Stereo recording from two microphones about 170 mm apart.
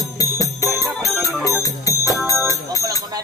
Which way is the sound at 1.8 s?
20° left (ahead or behind).